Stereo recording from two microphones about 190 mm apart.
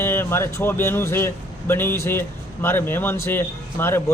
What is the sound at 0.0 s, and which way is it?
Speech, 10° left (ahead or behind).